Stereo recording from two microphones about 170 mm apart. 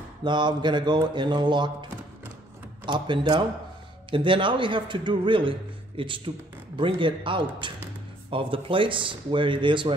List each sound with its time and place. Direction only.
0.2 s a man's voice: 25° right (ahead or behind)